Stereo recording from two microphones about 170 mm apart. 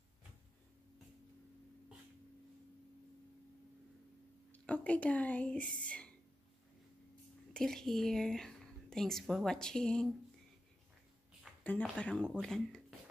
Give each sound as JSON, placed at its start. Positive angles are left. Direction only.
{"t": 4.5, "sound": "a woman's voice", "side_deg": 10}
{"t": 7.5, "sound": "a woman's voice", "side_deg": 5}
{"t": 11.6, "sound": "a woman's voice", "side_deg": 10}